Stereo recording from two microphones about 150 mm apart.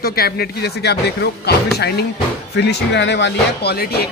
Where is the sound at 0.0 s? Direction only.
90° left.